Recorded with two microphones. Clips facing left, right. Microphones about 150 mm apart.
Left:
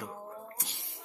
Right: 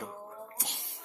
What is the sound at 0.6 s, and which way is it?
Speech, 70° right (ahead or behind).